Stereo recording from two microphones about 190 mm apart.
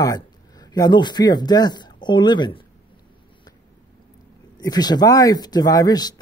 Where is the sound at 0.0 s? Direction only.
20° left (ahead or behind).